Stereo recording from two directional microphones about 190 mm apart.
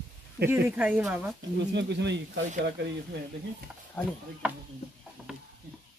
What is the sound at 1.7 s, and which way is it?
Speech, 65° right (ahead or behind).